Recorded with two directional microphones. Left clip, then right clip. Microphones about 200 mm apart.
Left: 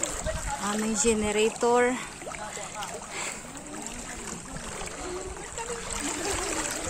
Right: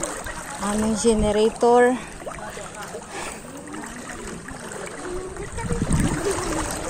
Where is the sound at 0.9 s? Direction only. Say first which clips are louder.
Right 6 dB; 5° right (ahead or behind).